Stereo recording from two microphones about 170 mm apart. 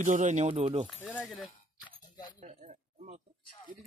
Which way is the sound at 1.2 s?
Centre (ahead or behind).